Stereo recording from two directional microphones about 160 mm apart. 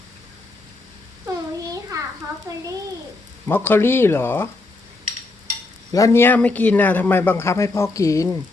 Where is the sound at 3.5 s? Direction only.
15° left (ahead or behind).